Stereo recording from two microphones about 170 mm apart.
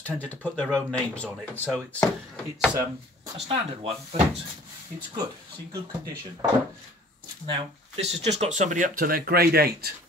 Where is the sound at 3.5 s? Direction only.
30° right (ahead or behind).